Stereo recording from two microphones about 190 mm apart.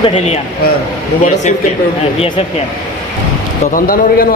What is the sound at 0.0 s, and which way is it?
Speech, 35° left (ahead or behind).